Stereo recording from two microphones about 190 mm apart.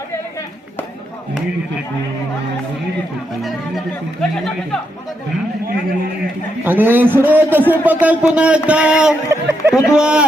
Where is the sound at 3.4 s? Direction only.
Centre (ahead or behind).